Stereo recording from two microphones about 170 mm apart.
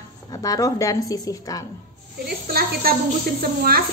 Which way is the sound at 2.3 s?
60° right (ahead or behind).